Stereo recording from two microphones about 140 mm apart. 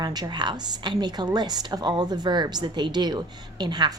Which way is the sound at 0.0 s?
30° right (ahead or behind).